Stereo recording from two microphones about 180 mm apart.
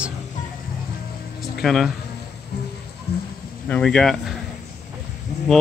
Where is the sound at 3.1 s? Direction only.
60° left (ahead or behind).